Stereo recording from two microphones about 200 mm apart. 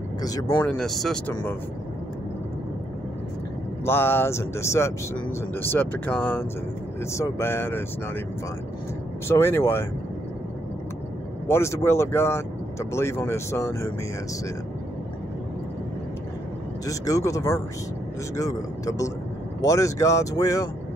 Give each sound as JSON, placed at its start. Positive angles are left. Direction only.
{"t": 0.2, "sound": "speech", "side_deg": 20}
{"t": 0.7, "sound": "speech", "side_deg": 0}
{"t": 3.8, "sound": "speech", "side_deg": 10}
{"t": 9.3, "sound": "speech", "side_deg": 10}
{"t": 11.4, "sound": "speech", "side_deg": 15}
{"t": 16.8, "sound": "speech", "side_deg": 15}